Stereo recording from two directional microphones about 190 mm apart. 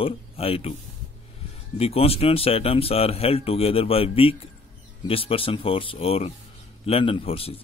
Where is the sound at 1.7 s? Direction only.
30° left (ahead or behind).